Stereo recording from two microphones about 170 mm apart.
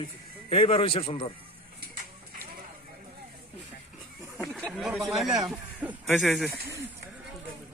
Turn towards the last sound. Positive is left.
turn(degrees=0)  # may be behind; listen again after turning